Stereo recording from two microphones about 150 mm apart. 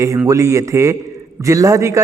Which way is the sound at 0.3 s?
20° right (ahead or behind).